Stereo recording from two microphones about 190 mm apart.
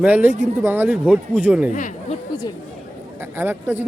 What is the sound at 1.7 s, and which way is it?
Speech, 40° left (ahead or behind).